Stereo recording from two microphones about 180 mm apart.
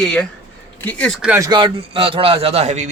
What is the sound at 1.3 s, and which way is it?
A man's voice, 20° right (ahead or behind).